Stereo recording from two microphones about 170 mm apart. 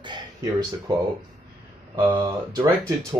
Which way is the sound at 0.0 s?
25° right (ahead or behind).